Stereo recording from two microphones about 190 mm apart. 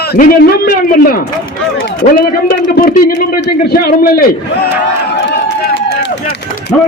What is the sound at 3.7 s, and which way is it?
Speech, 50° left (ahead or behind).